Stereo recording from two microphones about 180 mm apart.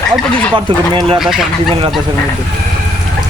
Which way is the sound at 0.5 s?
25° right (ahead or behind).